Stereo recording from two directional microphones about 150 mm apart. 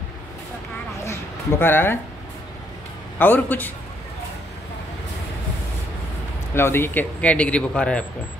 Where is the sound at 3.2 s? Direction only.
10° left (ahead or behind).